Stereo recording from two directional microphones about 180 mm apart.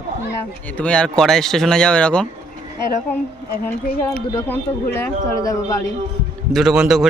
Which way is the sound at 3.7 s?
10° left (ahead or behind).